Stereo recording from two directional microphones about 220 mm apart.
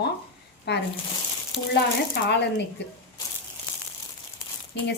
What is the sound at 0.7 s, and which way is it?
Speech, 50° left (ahead or behind).